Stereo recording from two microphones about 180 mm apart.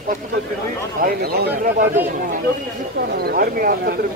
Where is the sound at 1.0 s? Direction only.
60° right (ahead or behind).